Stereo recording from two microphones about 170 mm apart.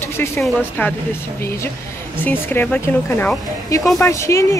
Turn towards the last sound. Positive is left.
turn(degrees=15)  # may be behind; listen again after turning